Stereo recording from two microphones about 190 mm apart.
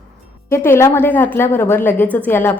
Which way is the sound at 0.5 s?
15° left (ahead or behind).